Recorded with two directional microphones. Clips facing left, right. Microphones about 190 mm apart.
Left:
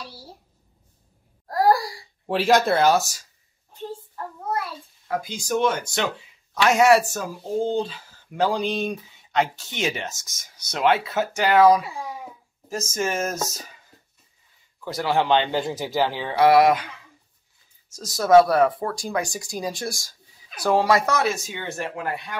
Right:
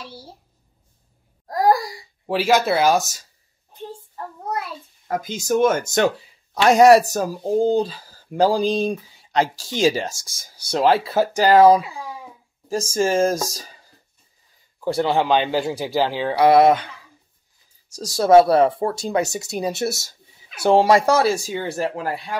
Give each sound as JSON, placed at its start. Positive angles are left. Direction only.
{"t": 1.5, "sound": "a sound", "side_deg": -20}
{"t": 2.2, "sound": "speech", "side_deg": 0}
{"t": 5.0, "sound": "a sound", "side_deg": -45}
{"t": 5.5, "sound": "speech", "side_deg": -45}
{"t": 14.9, "sound": "a man's voice", "side_deg": -25}
{"t": 17.9, "sound": "speech", "side_deg": -30}